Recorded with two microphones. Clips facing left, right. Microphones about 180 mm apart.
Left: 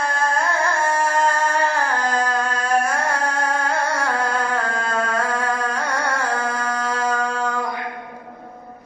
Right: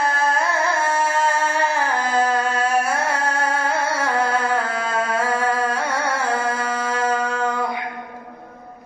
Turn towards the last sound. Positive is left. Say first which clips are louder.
# right 1 dB
turn(degrees=-5)  # may be behind; listen again after turning